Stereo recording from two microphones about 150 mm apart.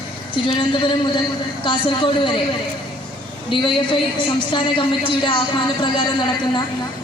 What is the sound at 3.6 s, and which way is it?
A woman's voice, 35° left (ahead or behind).